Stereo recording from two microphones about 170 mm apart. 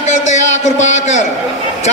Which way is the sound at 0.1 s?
45° left (ahead or behind).